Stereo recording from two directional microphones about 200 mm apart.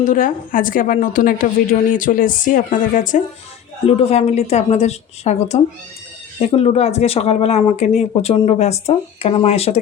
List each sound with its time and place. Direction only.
0.0 s a woman's voice: 40° left (ahead or behind)